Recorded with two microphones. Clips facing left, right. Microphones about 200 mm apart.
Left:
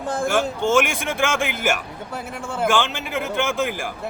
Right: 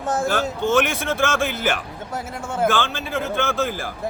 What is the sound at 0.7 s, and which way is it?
Speech, 10° left (ahead or behind).